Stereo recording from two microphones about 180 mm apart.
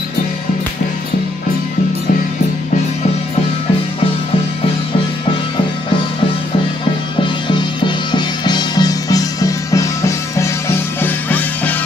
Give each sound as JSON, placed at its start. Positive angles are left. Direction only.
{"t": 7.4, "sound": "music", "side_deg": 25}